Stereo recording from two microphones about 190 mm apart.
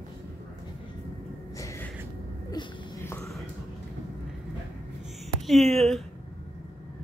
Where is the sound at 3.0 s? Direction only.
15° left (ahead or behind).